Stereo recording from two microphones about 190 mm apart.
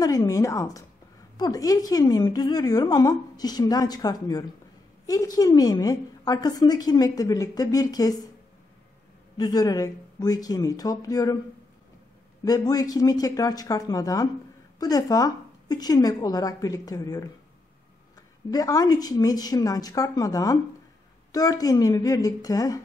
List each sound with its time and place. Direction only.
0.0 s a woman's voice: 20° left (ahead or behind)
9.4 s a woman's voice: 20° left (ahead or behind)
12.4 s a woman's voice: 20° left (ahead or behind)
18.5 s a woman's voice: 20° left (ahead or behind)